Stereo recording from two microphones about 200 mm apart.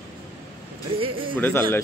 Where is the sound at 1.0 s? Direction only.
25° right (ahead or behind).